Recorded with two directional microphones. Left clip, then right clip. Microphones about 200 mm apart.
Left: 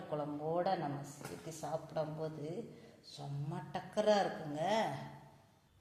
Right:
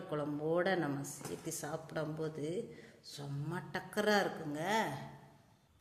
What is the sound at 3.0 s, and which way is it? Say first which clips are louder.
A woman's voice: right 2 dB; 40° right (ahead or behind).